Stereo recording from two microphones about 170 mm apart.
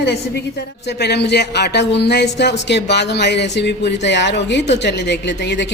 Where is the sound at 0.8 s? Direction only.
75° left (ahead or behind).